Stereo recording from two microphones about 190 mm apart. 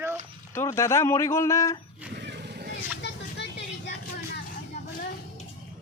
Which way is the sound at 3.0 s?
60° left (ahead or behind).